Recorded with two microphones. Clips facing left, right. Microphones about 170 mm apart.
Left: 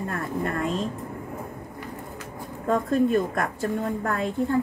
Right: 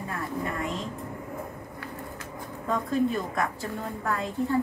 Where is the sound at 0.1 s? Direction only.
55° left (ahead or behind).